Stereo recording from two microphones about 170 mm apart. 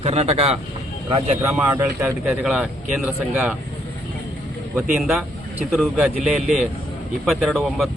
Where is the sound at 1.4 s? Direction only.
15° right (ahead or behind).